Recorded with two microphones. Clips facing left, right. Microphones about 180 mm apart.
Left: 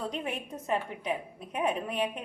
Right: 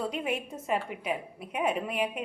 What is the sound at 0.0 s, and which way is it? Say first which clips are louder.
A woman's voice: right 3 dB; 10° right (ahead or behind).